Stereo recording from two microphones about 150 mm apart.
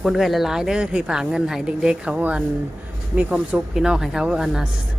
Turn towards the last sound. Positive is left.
turn(degrees=-5)  # may be behind; listen again after turning